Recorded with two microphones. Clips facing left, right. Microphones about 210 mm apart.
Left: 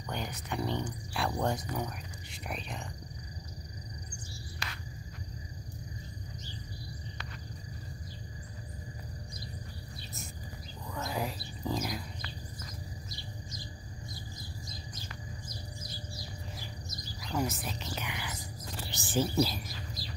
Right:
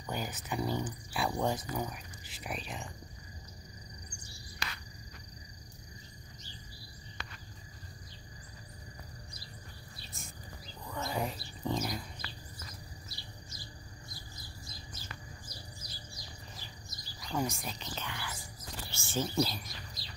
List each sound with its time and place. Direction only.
0.1 s speech: 5° right (ahead or behind)
10.9 s music: centre (ahead or behind)
17.2 s whispering: 5° left (ahead or behind)
17.9 s whispering: 15° left (ahead or behind)
18.9 s a sound: 15° left (ahead or behind)
19.3 s bird: 5° left (ahead or behind)